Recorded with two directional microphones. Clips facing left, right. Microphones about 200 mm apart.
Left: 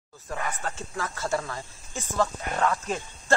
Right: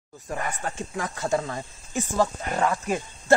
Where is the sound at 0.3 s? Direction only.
15° right (ahead or behind).